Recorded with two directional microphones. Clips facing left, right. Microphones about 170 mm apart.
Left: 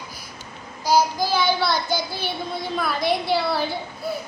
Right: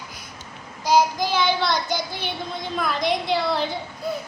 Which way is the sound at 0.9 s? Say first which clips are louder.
Even; 20° right (ahead or behind).